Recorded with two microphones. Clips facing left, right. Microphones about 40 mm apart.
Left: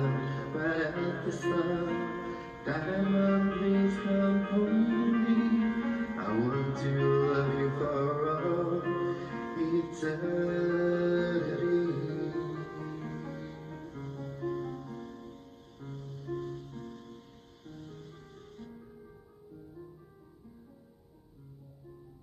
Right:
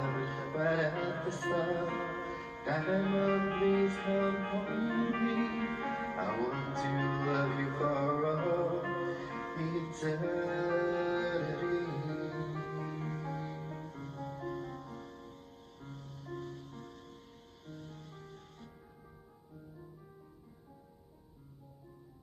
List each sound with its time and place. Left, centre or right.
0.0 s music: centre
2.0 s music: centre
5.2 s music: right
8.8 s music: centre
11.3 s music: centre
12.6 s music: right
13.7 s music: centre